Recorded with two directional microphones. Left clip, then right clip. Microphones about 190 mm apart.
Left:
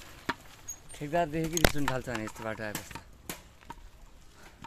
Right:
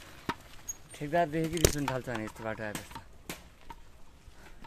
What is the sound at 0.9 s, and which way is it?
Speech, 10° right (ahead or behind).